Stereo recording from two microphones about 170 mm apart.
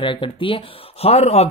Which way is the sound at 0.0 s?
30° left (ahead or behind).